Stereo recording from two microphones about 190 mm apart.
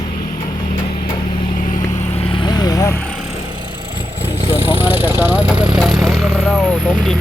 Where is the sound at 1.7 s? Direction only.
30° left (ahead or behind).